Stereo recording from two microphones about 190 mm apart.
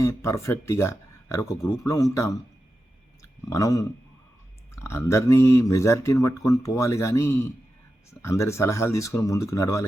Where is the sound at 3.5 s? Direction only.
15° left (ahead or behind).